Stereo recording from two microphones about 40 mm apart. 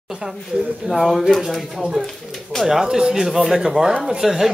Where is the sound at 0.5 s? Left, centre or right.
Right.